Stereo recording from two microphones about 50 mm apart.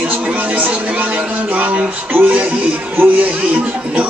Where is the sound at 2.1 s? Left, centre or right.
Right.